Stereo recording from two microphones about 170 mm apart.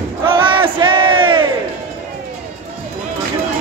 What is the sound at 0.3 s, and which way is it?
Battle cry, 30° right (ahead or behind).